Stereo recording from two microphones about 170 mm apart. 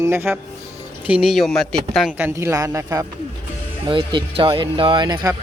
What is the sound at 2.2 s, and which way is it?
Speech, 15° right (ahead or behind).